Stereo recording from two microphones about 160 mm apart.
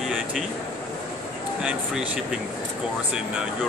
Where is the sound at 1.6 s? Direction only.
5° right (ahead or behind).